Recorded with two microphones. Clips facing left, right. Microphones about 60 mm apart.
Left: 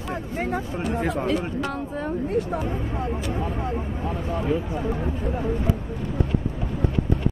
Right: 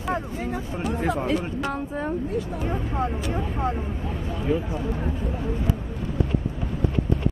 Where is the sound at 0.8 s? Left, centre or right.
Centre.